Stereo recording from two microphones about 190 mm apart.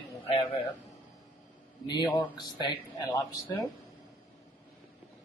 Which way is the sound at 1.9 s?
20° left (ahead or behind).